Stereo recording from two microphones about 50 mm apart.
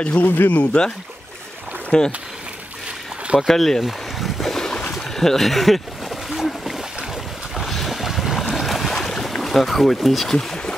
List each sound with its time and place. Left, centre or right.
0.0 s speech: left
1.9 s speech: centre
3.3 s speech: centre
3.8 s boat: centre
4.9 s a sound: centre
7.5 s boat: centre
10.3 s speech: centre